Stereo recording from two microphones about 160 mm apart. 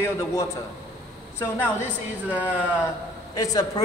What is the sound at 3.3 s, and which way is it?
Speech, 25° left (ahead or behind).